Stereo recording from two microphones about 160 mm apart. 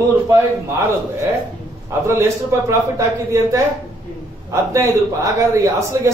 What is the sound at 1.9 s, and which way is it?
A man's voice, 20° right (ahead or behind).